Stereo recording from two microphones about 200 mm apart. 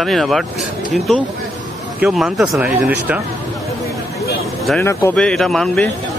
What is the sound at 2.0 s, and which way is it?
Speech, 5° right (ahead or behind).